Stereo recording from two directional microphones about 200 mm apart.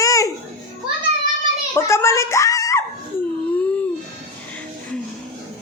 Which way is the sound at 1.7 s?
15° left (ahead or behind).